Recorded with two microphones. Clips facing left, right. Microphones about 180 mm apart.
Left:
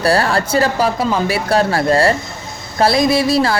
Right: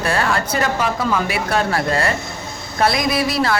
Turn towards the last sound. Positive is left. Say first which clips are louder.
# left 4 dB
turn(degrees=30)  # may be behind; listen again after turning